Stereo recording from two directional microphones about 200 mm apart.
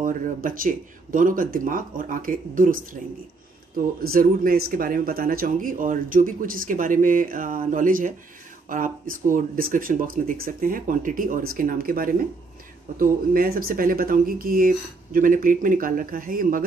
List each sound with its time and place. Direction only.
0.0 s speech: 45° right (ahead or behind)